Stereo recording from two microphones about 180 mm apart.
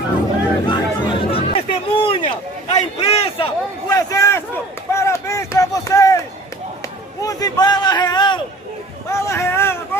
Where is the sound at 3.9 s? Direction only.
15° left (ahead or behind).